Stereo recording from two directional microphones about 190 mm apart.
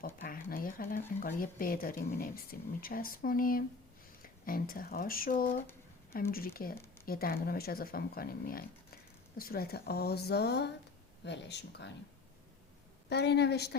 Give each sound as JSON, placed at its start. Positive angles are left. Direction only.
{"t": 0.0, "sound": "a sound", "side_deg": 50}
{"t": 0.5, "sound": "speech", "side_deg": 50}
{"t": 13.1, "sound": "speech", "side_deg": 60}